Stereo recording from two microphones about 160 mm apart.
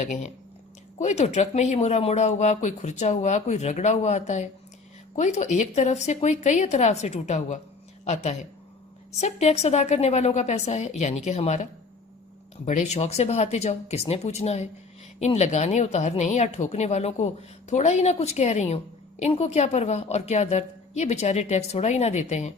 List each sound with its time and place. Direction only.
0.0 s speech: 50° left (ahead or behind)